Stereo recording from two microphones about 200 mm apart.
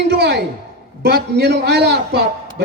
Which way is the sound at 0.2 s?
55° right (ahead or behind).